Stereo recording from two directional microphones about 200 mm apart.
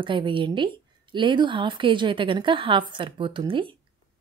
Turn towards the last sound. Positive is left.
turn(degrees=-25)  # may be behind; listen again after turning